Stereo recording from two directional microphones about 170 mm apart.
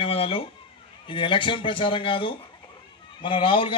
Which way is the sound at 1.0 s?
30° left (ahead or behind).